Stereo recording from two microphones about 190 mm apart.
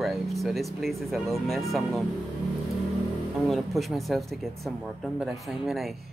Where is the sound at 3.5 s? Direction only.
Centre (ahead or behind).